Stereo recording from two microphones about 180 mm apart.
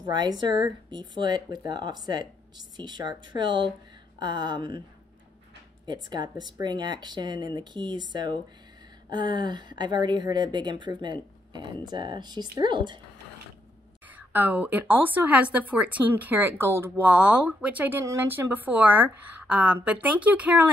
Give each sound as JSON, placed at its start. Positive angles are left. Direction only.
{"t": 0.0, "sound": "speech", "side_deg": -20}
{"t": 5.9, "sound": "speech", "side_deg": -25}
{"t": 14.1, "sound": "speech", "side_deg": -10}